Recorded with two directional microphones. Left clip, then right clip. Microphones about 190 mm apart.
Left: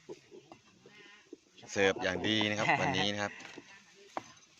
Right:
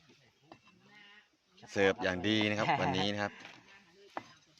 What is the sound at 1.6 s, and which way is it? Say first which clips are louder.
Speech: even; 20° right (ahead or behind).